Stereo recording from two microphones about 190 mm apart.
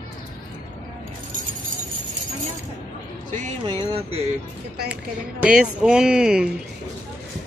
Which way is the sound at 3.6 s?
30° right (ahead or behind).